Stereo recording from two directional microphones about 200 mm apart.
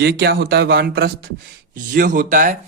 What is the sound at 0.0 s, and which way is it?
Speech, 55° right (ahead or behind).